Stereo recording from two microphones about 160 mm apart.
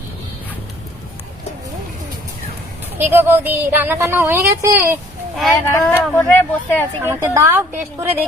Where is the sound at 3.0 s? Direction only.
15° right (ahead or behind).